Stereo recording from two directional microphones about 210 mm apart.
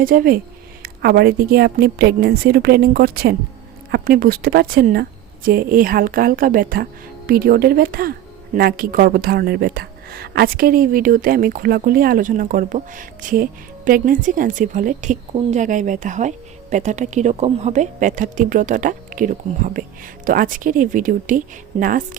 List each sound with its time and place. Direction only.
0.0 s a woman's voice: 45° right (ahead or behind)